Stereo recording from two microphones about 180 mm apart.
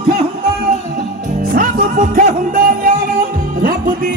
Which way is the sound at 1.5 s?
50° right (ahead or behind).